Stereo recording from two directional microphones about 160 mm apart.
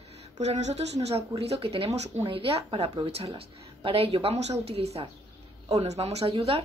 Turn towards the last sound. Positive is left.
turn(degrees=-35)  # may be behind; listen again after turning